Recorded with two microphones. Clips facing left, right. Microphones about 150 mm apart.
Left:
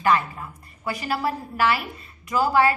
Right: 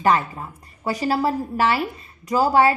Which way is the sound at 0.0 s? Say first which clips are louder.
Right 2 dB; 40° right (ahead or behind).